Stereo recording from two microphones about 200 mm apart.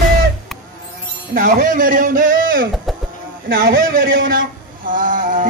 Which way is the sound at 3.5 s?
45° right (ahead or behind).